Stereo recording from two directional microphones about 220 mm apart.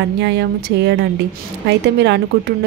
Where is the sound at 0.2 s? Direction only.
50° right (ahead or behind).